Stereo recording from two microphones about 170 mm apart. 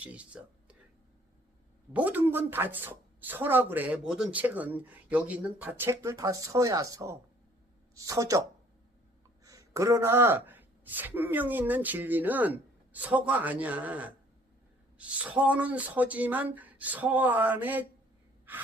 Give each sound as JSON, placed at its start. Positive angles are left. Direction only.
{"t": 0.0, "sound": "speech", "side_deg": -10}
{"t": 1.9, "sound": "speech", "side_deg": -10}